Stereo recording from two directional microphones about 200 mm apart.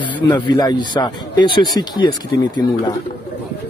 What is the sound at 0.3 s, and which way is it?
A man's voice, 20° left (ahead or behind).